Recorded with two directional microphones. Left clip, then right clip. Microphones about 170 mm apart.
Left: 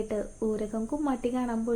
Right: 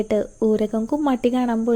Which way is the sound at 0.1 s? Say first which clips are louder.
Right 11 dB; 50° right (ahead or behind).